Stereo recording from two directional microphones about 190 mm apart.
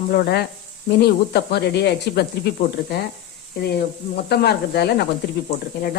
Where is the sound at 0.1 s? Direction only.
55° left (ahead or behind).